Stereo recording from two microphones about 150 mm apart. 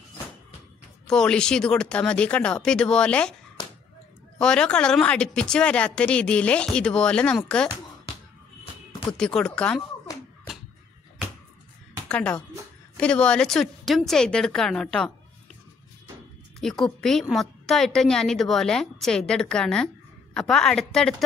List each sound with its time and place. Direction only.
1.0 s speech: 5° left (ahead or behind)
3.6 s whip: 30° left (ahead or behind)
4.4 s a woman's voice: 5° left (ahead or behind)
9.1 s speech: 5° left (ahead or behind)
12.1 s a woman's voice: 10° left (ahead or behind)
16.6 s speech: centre (ahead or behind)